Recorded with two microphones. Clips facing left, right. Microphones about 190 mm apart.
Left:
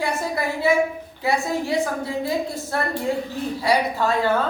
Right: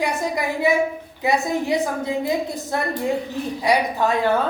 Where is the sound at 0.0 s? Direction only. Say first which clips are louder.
Right 1 dB; 15° right (ahead or behind).